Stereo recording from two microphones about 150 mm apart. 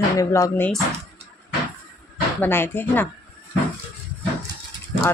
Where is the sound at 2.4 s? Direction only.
15° left (ahead or behind).